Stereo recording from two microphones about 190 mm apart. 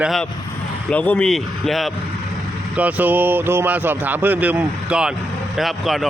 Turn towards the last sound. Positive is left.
turn(degrees=0)  # may be behind; listen again after turning